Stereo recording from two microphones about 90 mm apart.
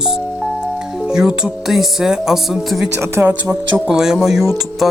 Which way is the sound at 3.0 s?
25° right (ahead or behind).